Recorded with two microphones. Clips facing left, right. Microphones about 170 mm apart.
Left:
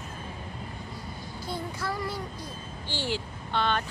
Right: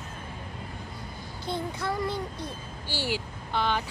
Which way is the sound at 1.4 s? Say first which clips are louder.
Right 3 dB; 20° right (ahead or behind).